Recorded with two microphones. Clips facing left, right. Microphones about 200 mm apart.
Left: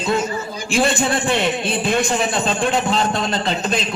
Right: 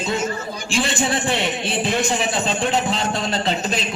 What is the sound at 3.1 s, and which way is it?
Speech, 55° left (ahead or behind).